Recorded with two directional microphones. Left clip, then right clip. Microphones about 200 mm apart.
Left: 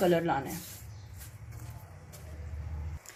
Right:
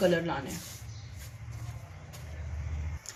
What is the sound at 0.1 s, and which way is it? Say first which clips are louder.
Speech: left 2 dB; 45° left (ahead or behind).